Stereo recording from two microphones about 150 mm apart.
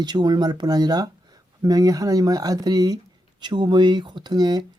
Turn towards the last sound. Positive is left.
turn(degrees=-30)  # may be behind; listen again after turning